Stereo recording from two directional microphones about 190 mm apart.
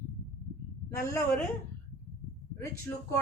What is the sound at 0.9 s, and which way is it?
Speech, 15° left (ahead or behind).